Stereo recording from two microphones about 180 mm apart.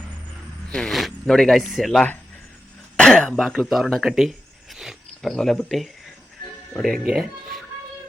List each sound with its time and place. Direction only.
0.7 s speech: centre (ahead or behind)